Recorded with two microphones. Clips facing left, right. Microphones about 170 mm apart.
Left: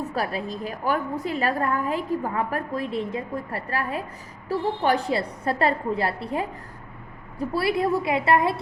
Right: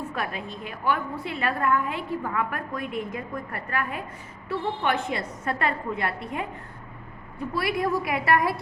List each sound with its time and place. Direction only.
0.1 s a woman's voice: 35° left (ahead or behind)